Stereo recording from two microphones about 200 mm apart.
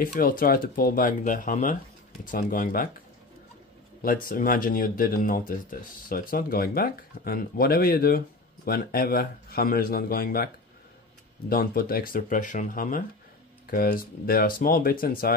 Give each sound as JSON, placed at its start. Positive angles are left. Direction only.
{"t": 0.0, "sound": "speech", "side_deg": 45}
{"t": 4.0, "sound": "speech", "side_deg": 45}